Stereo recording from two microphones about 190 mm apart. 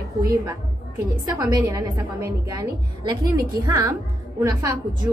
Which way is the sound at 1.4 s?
20° right (ahead or behind).